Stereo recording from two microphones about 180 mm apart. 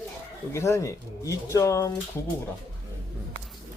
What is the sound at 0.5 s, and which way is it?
Speech, 15° left (ahead or behind).